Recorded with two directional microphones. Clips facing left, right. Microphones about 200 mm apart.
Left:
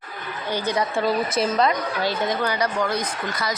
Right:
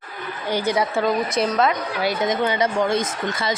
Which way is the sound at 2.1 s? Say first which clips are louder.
Right 4 dB; 20° right (ahead or behind).